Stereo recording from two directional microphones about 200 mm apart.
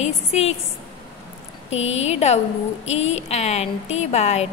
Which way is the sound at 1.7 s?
30° left (ahead or behind).